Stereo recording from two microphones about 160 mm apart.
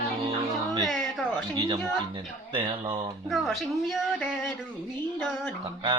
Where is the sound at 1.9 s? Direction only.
30° right (ahead or behind).